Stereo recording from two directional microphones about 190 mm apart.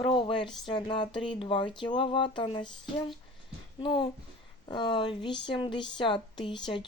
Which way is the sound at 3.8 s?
25° left (ahead or behind).